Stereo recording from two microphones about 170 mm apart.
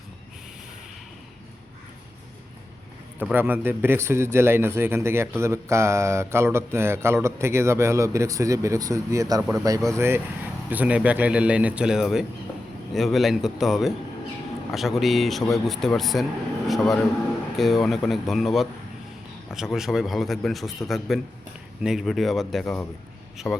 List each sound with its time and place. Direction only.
3.3 s a man's voice: 10° right (ahead or behind)